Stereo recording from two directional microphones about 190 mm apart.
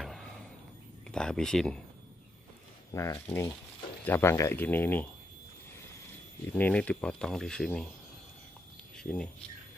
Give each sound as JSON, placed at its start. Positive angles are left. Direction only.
{"t": 0.0, "sound": "a sound", "side_deg": 0}
{"t": 1.1, "sound": "speech", "side_deg": 5}
{"t": 2.9, "sound": "speech", "side_deg": 15}
{"t": 6.5, "sound": "speech", "side_deg": 10}
{"t": 8.9, "sound": "speech", "side_deg": 5}